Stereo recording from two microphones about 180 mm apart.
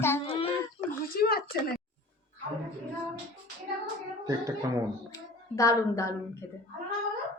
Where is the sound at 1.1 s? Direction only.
60° left (ahead or behind).